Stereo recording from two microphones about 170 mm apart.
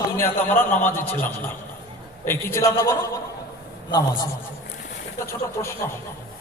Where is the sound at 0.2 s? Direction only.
10° left (ahead or behind).